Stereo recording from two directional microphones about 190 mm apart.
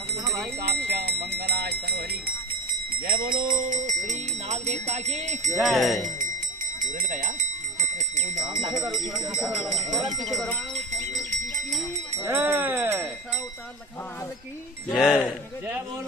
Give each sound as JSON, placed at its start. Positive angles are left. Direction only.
{"t": 0.7, "sound": "a sound", "side_deg": -60}
{"t": 3.1, "sound": "speech", "side_deg": -50}
{"t": 5.6, "sound": "speech", "side_deg": 0}
{"t": 6.8, "sound": "speech", "side_deg": -45}
{"t": 8.8, "sound": "speech", "side_deg": -20}
{"t": 9.4, "sound": "speech", "side_deg": 0}
{"t": 12.3, "sound": "speech", "side_deg": -10}
{"t": 14.9, "sound": "speech", "side_deg": 0}